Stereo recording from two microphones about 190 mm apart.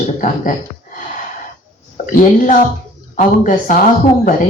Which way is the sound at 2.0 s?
45° left (ahead or behind).